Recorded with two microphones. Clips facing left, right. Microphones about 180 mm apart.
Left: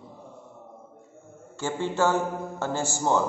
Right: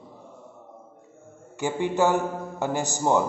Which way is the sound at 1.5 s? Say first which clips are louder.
Right 3 dB; 15° right (ahead or behind).